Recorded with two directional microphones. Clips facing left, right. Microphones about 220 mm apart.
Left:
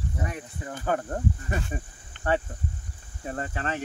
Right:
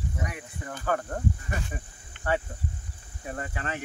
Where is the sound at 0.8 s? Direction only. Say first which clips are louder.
Left 1 dB; 25° left (ahead or behind).